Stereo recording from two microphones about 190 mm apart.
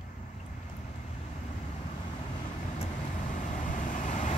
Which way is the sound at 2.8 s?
40° left (ahead or behind).